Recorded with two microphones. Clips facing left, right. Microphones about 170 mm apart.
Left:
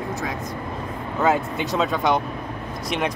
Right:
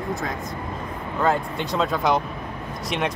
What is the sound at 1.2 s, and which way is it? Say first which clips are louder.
Speech: left 2 dB; 5° left (ahead or behind).